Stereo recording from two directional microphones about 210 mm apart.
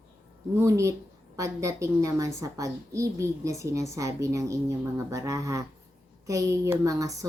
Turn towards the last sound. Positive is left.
turn(degrees=-15)  # may be behind; listen again after turning